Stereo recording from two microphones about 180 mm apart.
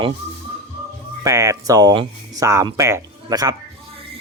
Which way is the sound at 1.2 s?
15° right (ahead or behind).